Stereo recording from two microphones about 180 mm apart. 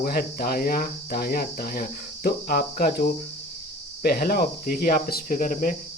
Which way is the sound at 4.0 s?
55° left (ahead or behind).